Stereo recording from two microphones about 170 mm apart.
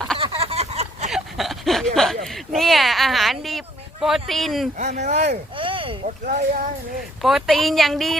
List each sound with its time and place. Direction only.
0.2 s a sound: 35° right (ahead or behind)
1.1 s a sound: centre (ahead or behind)
2.2 s speech: centre (ahead or behind)
4.8 s speech: 45° right (ahead or behind)
6.2 s speech: 45° right (ahead or behind)
7.2 s speech: centre (ahead or behind)